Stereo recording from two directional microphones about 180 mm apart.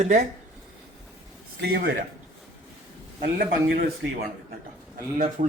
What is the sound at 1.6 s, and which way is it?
Speech, 65° right (ahead or behind).